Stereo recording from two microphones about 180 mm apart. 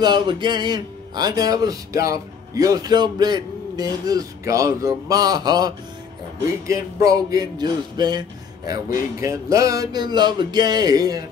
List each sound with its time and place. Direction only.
0.0 s speech: 25° right (ahead or behind)